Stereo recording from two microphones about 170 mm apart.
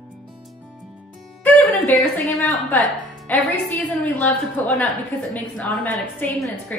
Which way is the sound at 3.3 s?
10° left (ahead or behind).